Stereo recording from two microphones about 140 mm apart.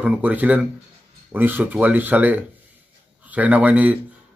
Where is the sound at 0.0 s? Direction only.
10° right (ahead or behind).